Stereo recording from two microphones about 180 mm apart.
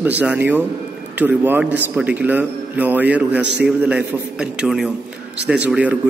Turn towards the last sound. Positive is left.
turn(degrees=-5)  # may be behind; listen again after turning